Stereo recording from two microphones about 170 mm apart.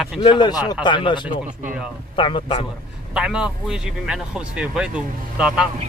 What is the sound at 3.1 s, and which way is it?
Speech, 5° right (ahead or behind).